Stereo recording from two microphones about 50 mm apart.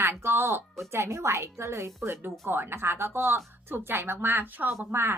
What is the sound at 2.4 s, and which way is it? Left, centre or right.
Speech, right.